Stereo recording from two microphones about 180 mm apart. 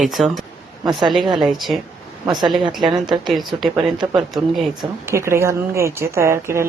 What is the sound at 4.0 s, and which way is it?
Speech, 25° right (ahead or behind).